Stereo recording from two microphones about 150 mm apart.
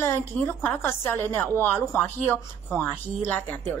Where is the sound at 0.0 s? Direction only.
15° left (ahead or behind).